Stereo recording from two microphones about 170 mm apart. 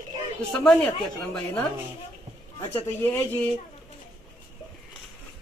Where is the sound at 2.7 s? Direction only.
15° left (ahead or behind).